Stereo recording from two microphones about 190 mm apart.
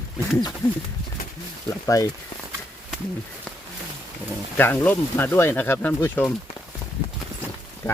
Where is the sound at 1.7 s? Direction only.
15° left (ahead or behind).